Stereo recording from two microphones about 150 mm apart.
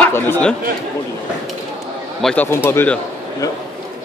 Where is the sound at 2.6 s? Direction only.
15° left (ahead or behind).